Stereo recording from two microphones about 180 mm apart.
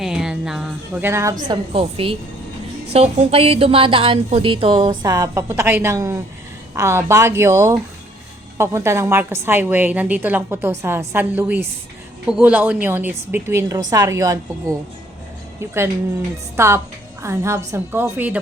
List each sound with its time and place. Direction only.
0.0 s a woman's voice: 5° right (ahead or behind)
1.5 s a woman's voice: 30° right (ahead or behind)
16.6 s a woman's voice: 15° right (ahead or behind)